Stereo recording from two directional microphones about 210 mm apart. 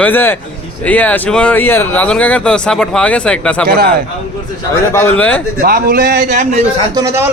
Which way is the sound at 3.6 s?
45° right (ahead or behind).